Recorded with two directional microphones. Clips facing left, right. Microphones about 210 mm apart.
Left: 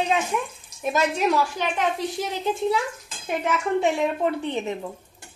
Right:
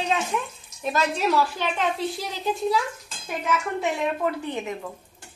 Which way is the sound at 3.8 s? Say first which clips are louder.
Left 3 dB; 25° left (ahead or behind).